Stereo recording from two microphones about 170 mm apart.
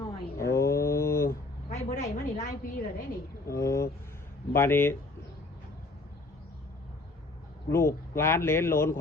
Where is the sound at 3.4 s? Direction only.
15° left (ahead or behind).